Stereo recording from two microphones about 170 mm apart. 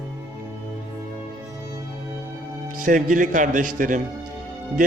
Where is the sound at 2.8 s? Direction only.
50° right (ahead or behind).